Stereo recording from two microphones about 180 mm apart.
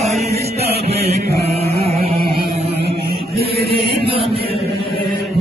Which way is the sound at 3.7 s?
30° right (ahead or behind).